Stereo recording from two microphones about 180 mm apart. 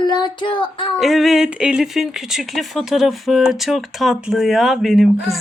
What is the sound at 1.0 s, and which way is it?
Speech, centre (ahead or behind).